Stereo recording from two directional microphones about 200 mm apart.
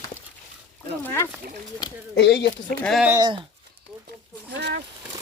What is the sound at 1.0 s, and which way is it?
Speech, 10° left (ahead or behind).